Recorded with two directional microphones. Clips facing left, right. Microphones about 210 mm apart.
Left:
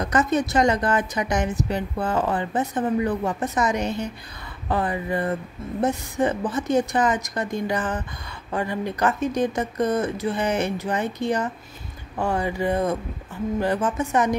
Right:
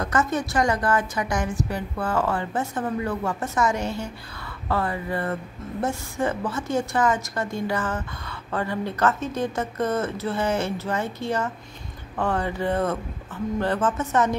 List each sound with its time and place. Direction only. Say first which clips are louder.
0.0 s a woman's voice: left 3 dB; 20° left (ahead or behind)